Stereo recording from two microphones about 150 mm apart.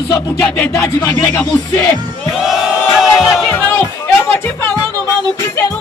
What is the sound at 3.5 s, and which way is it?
Music, 10° left (ahead or behind).